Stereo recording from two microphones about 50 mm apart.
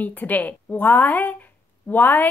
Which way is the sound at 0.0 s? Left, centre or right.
Left.